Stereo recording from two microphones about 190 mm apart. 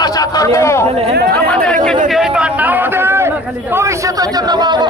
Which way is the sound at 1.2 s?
55° right (ahead or behind).